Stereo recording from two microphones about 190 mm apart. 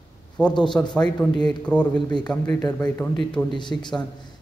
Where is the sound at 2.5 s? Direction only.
20° left (ahead or behind).